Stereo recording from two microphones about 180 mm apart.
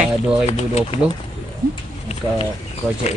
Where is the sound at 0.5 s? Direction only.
35° left (ahead or behind).